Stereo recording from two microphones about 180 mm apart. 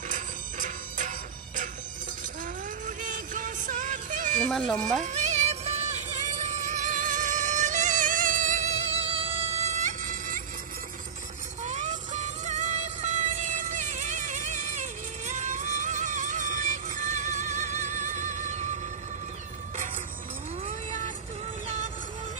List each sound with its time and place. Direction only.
0.1 s music: 45° right (ahead or behind)
3.0 s music: 45° right (ahead or behind)
4.5 s speech: 5° left (ahead or behind)
5.0 s music: 40° right (ahead or behind)
11.6 s music: 40° right (ahead or behind)
20.6 s vehicle: 45° right (ahead or behind)